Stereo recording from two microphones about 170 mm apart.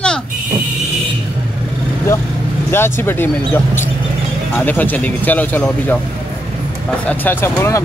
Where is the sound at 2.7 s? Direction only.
15° left (ahead or behind).